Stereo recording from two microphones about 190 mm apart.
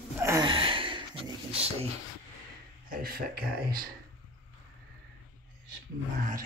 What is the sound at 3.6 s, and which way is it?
Speech, 50° right (ahead or behind).